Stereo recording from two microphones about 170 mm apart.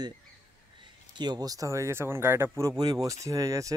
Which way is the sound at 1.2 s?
25° right (ahead or behind).